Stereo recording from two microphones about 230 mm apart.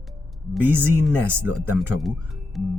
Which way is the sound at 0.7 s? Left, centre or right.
Centre.